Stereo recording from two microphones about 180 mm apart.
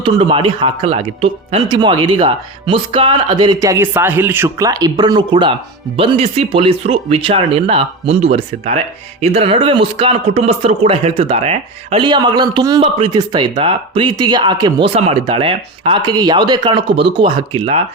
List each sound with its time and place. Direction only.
0.0 s speech: 30° right (ahead or behind)
1.6 s speech: 25° right (ahead or behind)